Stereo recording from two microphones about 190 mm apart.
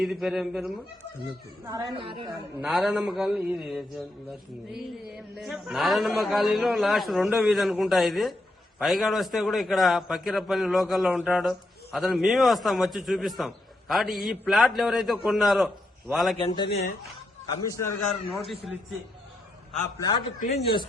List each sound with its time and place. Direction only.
0.0 s a man's voice: centre (ahead or behind)
1.6 s a woman's voice: 20° right (ahead or behind)
2.6 s a man's voice: centre (ahead or behind)
16.4 s speech: 25° left (ahead or behind)
16.6 s speech: 60° left (ahead or behind)
18.1 s a man's voice: centre (ahead or behind)
20.0 s speech: 20° left (ahead or behind)